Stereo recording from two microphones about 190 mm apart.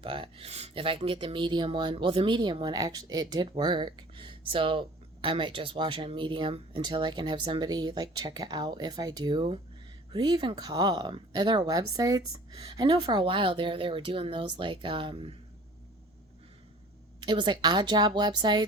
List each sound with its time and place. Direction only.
0.0 s speech: 30° right (ahead or behind)
17.2 s speech: 25° right (ahead or behind)